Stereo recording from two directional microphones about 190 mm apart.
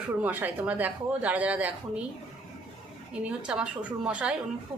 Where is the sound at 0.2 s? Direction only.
10° right (ahead or behind).